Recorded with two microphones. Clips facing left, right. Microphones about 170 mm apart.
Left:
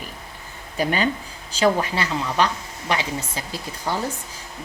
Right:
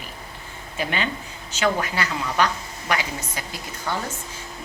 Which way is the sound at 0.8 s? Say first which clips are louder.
Left 5 dB; 40° left (ahead or behind).